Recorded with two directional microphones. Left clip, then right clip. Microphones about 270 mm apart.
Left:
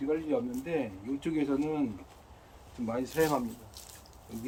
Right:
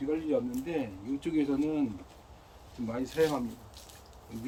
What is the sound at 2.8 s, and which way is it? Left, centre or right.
Speech, centre.